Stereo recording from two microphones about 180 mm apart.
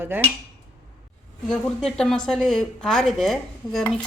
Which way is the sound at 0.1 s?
10° right (ahead or behind).